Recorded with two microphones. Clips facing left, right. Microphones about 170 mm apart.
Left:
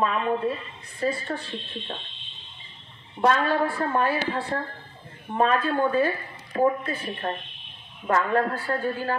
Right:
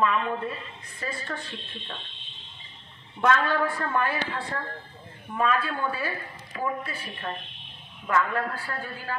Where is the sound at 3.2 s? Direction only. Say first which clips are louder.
Left 2 dB; 30° left (ahead or behind).